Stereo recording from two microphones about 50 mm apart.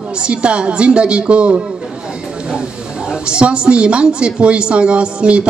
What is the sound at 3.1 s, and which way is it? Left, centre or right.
A man's voice, centre.